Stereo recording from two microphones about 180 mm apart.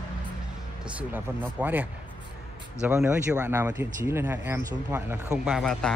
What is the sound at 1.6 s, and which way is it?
Speech, 10° right (ahead or behind).